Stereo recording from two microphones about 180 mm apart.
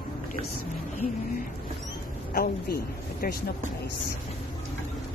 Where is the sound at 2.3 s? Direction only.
55° left (ahead or behind).